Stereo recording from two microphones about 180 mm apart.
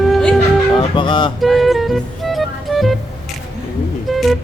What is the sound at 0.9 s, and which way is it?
Speech, 25° left (ahead or behind).